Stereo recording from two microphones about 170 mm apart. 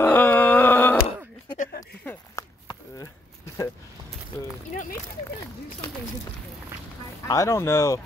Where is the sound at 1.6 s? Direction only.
50° left (ahead or behind).